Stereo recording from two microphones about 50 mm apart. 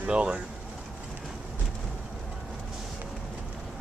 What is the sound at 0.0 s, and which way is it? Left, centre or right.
Speech, right.